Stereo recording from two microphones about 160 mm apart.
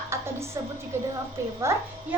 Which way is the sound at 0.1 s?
15° right (ahead or behind).